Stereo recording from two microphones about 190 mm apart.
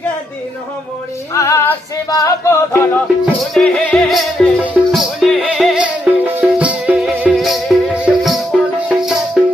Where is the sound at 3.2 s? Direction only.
5° left (ahead or behind).